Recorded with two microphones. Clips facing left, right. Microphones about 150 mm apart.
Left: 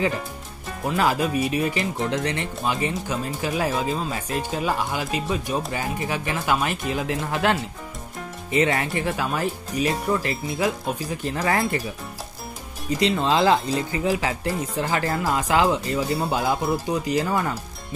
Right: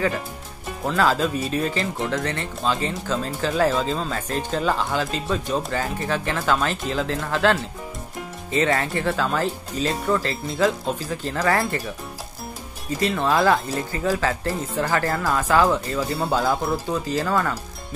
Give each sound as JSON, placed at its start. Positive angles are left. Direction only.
{"t": 0.8, "sound": "speech", "side_deg": 15}
{"t": 13.0, "sound": "speech", "side_deg": 20}